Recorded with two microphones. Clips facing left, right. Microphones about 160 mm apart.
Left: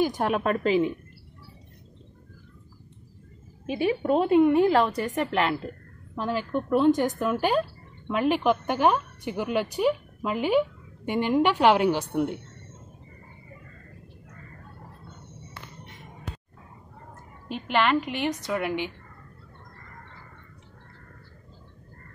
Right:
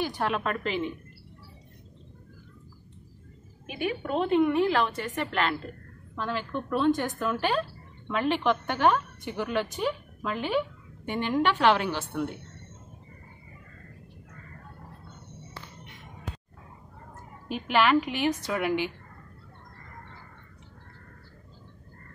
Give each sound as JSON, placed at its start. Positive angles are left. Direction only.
{"t": 0.0, "sound": "a woman's voice", "side_deg": 15}
{"t": 0.4, "sound": "a woman's voice", "side_deg": 40}
{"t": 3.6, "sound": "a woman's voice", "side_deg": 35}
{"t": 5.0, "sound": "a woman's voice", "side_deg": 20}
{"t": 6.9, "sound": "a woman's voice", "side_deg": 40}
{"t": 7.2, "sound": "a woman's voice", "side_deg": 10}
{"t": 17.5, "sound": "a woman's voice", "side_deg": -5}